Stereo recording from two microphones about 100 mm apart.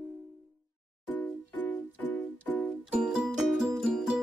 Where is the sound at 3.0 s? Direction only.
5° right (ahead or behind).